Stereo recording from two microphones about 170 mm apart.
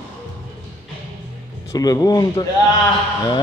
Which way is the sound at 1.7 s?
20° left (ahead or behind).